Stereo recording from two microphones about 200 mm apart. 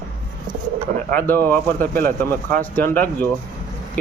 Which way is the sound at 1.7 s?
45° right (ahead or behind).